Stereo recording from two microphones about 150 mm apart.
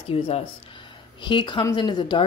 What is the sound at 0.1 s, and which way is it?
A woman's voice, 40° left (ahead or behind).